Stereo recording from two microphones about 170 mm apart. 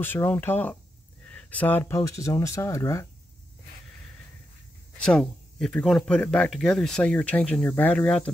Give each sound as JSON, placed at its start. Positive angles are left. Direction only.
{"t": 0.0, "sound": "speech", "side_deg": 15}
{"t": 4.9, "sound": "speech", "side_deg": 5}